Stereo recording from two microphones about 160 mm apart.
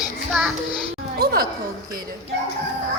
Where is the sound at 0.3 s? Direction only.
Centre (ahead or behind).